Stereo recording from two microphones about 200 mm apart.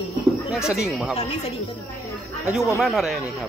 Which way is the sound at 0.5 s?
5° right (ahead or behind).